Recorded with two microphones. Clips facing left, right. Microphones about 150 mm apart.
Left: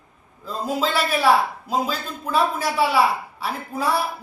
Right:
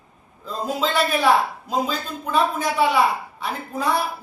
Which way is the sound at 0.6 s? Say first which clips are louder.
Right 1 dB; 5° left (ahead or behind).